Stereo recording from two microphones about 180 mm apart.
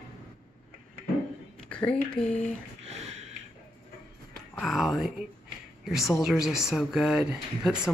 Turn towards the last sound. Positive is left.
turn(degrees=-5)  # may be behind; listen again after turning